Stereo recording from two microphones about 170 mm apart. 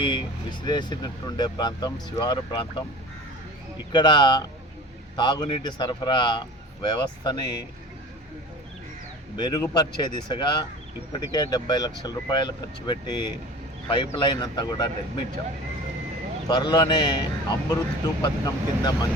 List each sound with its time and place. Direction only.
0.0 s speech: 25° left (ahead or behind)
3.9 s speech: 25° left (ahead or behind)
9.4 s speech: 25° left (ahead or behind)
16.5 s speech: 25° left (ahead or behind)